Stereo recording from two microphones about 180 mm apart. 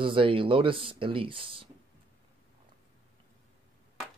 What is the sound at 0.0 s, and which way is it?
Speech, 30° right (ahead or behind).